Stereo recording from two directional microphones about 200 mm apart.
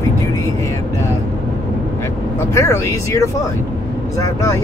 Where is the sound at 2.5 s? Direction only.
15° left (ahead or behind).